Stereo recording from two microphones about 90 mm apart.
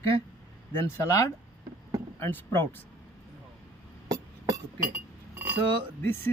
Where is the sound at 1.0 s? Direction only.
35° left (ahead or behind).